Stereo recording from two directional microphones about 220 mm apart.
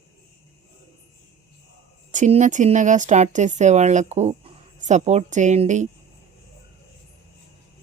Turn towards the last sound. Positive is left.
turn(degrees=-30)  # may be behind; listen again after turning